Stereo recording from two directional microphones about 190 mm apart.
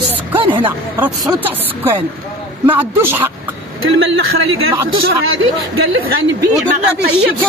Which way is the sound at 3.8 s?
90° right.